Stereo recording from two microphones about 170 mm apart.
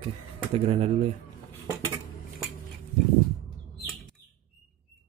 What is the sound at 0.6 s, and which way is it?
Speech, 35° right (ahead or behind).